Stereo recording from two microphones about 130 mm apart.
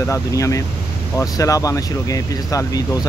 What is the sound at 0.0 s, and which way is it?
Speech, 25° left (ahead or behind).